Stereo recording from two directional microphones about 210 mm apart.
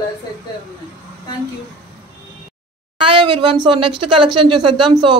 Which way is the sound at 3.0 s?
25° right (ahead or behind).